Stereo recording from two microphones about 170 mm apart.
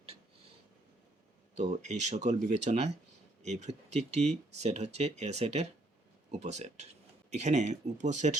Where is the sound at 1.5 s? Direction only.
45° right (ahead or behind).